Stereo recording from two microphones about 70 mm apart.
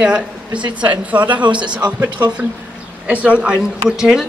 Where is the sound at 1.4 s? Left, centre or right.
Right.